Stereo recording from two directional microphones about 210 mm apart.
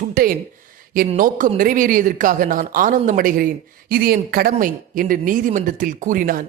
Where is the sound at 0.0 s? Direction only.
40° right (ahead or behind).